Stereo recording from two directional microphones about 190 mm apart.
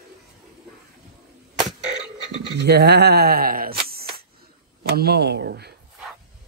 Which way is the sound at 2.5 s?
60° right (ahead or behind).